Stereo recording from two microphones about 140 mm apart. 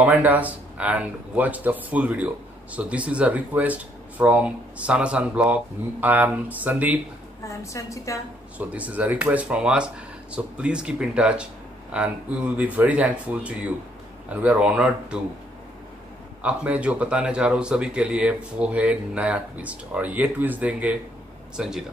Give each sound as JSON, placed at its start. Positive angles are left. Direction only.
{"t": 0.0, "sound": "speech", "side_deg": -10}
{"t": 7.4, "sound": "a woman's voice", "side_deg": 20}
{"t": 8.5, "sound": "speech", "side_deg": -10}
{"t": 16.4, "sound": "speech", "side_deg": -10}